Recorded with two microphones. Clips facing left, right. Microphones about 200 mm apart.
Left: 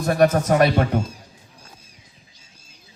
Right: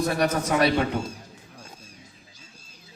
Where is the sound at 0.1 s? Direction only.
50° left (ahead or behind).